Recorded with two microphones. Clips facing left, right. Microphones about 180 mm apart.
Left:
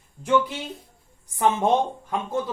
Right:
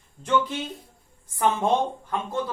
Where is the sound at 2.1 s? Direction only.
15° left (ahead or behind).